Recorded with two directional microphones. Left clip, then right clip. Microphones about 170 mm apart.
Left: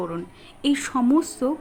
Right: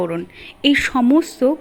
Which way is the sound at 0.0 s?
20° right (ahead or behind).